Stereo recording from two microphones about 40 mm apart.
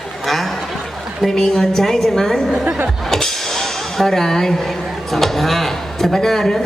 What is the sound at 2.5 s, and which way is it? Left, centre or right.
Speech, right.